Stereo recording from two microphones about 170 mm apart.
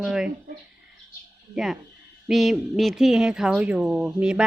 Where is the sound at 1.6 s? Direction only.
Centre (ahead or behind).